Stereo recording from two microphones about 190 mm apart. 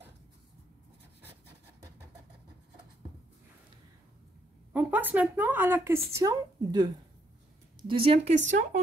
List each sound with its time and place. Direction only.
4.7 s speech: 10° right (ahead or behind); by 8.6 s 40° right (ahead or behind)